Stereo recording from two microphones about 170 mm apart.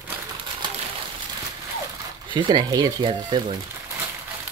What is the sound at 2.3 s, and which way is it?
Speech, 25° right (ahead or behind).